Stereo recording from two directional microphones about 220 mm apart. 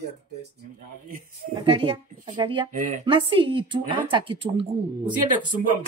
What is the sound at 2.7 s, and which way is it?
Speech, 35° right (ahead or behind).